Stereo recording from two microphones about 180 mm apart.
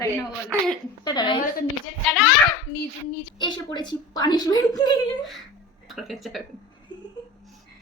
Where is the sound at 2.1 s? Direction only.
Centre (ahead or behind).